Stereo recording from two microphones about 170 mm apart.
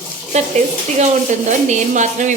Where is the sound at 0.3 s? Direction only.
45° right (ahead or behind).